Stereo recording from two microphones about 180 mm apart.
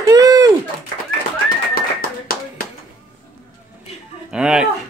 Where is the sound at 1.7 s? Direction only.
55° left (ahead or behind).